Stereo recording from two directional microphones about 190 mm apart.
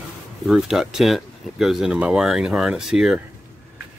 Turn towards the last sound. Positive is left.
turn(degrees=-5)  # may be behind; listen again after turning